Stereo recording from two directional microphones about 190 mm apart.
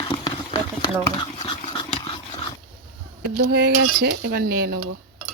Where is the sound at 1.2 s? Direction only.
25° left (ahead or behind).